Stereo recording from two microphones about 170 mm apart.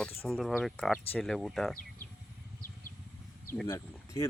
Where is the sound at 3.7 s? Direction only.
20° left (ahead or behind).